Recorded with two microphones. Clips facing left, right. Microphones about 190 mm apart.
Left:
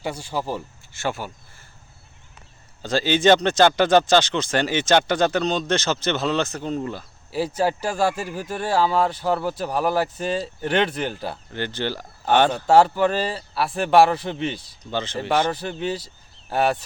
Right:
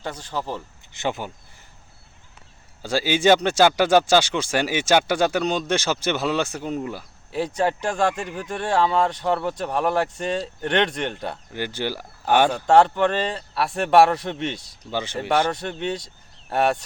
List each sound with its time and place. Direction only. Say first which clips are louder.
0.0 s speech: left 2 dB; 10° left (ahead or behind)
0.9 s speech: right 1 dB; 20° right (ahead or behind)
2.8 s speech: left 1 dB; 10° right (ahead or behind)
7.3 s speech: even; 5° left (ahead or behind)
11.5 s speech: left 1 dB; 10° right (ahead or behind)
12.5 s speech: even; 5° left (ahead or behind)
14.9 s speech: even; 10° right (ahead or behind)
15.4 s speech: left 1 dB; centre (ahead or behind)